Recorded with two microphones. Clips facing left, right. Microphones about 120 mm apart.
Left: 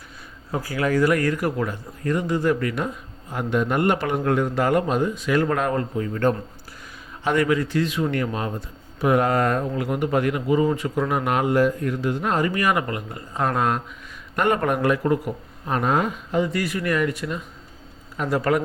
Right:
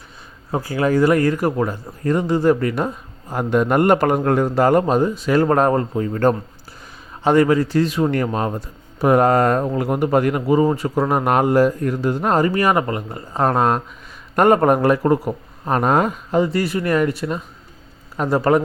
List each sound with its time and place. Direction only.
0.5 s a man's voice: 30° right (ahead or behind)